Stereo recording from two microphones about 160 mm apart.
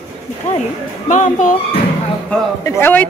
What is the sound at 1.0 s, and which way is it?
Speech, 50° left (ahead or behind).